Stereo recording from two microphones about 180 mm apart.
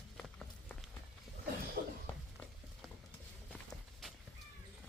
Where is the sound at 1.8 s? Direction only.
60° right (ahead or behind).